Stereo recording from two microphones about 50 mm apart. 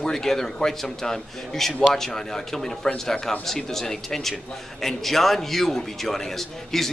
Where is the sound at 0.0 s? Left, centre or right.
Centre.